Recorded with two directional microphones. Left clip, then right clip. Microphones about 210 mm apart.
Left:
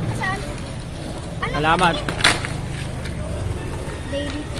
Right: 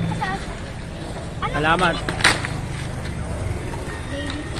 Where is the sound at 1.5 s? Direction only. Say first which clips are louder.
Left 1 dB; centre (ahead or behind).